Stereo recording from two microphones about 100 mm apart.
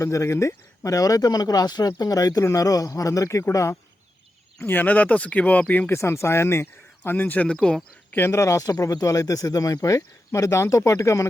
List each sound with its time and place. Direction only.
0.0 s speech: 30° left (ahead or behind)
4.6 s speech: 20° left (ahead or behind)
6.0 s speech: 30° left (ahead or behind); by 7.9 s 5° left (ahead or behind)
8.1 s speech: 25° left (ahead or behind)